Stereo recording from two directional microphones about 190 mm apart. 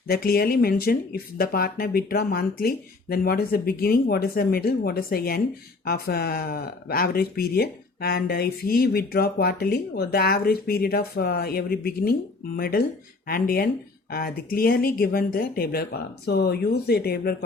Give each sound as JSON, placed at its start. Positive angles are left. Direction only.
{"t": 0.1, "sound": "speech", "side_deg": 50}